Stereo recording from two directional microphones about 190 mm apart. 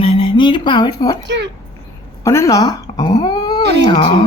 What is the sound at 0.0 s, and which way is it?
Music, 30° left (ahead or behind).